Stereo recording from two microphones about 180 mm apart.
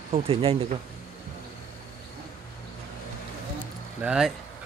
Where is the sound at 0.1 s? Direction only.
30° right (ahead or behind).